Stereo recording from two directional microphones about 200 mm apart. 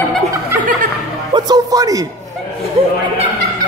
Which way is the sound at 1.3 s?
20° right (ahead or behind).